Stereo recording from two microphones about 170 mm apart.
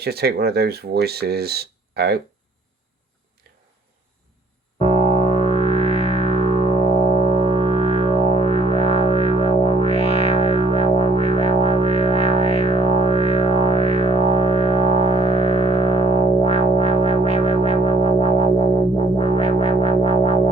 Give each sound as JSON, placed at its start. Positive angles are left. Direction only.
{"t": 0.0, "sound": "speech", "side_deg": -70}
{"t": 4.8, "sound": "music", "side_deg": 35}